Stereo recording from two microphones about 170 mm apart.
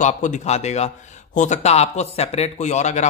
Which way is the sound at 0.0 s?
45° left (ahead or behind).